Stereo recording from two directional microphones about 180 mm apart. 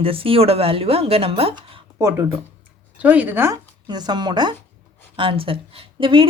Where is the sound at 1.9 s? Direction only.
15° right (ahead or behind).